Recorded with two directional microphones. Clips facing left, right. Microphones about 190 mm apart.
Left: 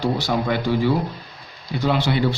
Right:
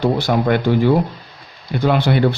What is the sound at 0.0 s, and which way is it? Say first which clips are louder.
Speech: right 5 dB; 60° right (ahead or behind).